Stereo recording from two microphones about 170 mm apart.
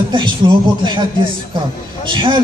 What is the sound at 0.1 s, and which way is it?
Speech, 30° right (ahead or behind).